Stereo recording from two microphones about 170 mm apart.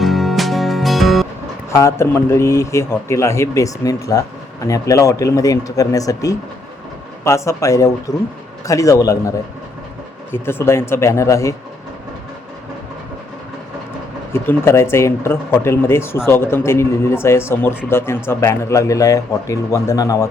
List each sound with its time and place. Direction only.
0.0 s music: centre (ahead or behind)
1.7 s speech: 15° left (ahead or behind)
10.3 s speech: 15° left (ahead or behind)
14.3 s speech: 15° left (ahead or behind)